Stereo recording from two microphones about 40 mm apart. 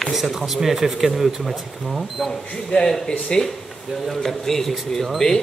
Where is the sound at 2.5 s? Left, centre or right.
Left.